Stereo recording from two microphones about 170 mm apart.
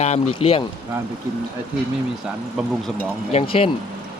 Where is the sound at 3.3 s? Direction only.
35° left (ahead or behind).